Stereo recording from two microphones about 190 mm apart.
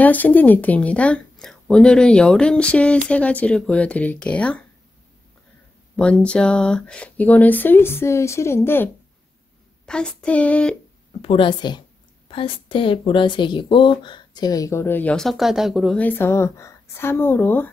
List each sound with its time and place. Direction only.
0.0 s speech: 10° left (ahead or behind)
5.9 s speech: 5° left (ahead or behind)
9.8 s child singing: 5° left (ahead or behind)
11.2 s a woman's voice: 25° left (ahead or behind); by 17.6 s 10° left (ahead or behind)